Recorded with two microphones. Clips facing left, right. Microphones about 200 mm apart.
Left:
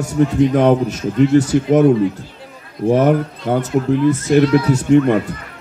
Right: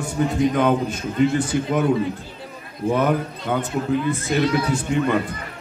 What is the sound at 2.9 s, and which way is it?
Speech, 40° left (ahead or behind).